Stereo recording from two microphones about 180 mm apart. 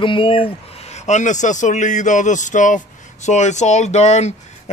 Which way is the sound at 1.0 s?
40° left (ahead or behind).